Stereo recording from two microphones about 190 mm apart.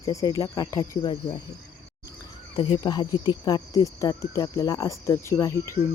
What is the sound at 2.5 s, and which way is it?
Cricket, 25° left (ahead or behind).